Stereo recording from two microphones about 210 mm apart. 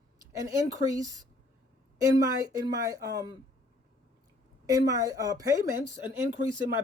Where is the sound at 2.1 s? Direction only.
15° right (ahead or behind).